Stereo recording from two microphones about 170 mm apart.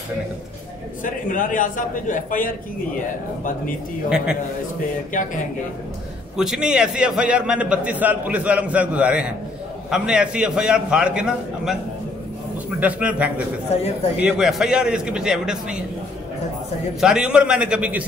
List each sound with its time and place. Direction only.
1.0 s a man's voice: 50° left (ahead or behind)
5.1 s a man's voice: 50° left (ahead or behind)
6.3 s a man's voice: 5° right (ahead or behind)
12.8 s a man's voice: 10° right (ahead or behind)
17.0 s a man's voice: 5° right (ahead or behind)